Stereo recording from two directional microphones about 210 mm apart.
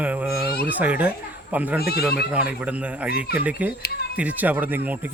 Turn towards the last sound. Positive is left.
turn(degrees=-10)  # may be behind; listen again after turning